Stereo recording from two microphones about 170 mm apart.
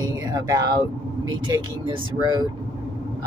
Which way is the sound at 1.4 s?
25° right (ahead or behind).